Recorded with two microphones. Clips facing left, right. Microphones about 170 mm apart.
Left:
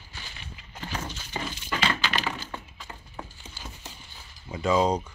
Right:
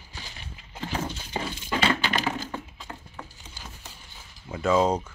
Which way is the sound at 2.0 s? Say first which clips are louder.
Right 3 dB; 45° right (ahead or behind).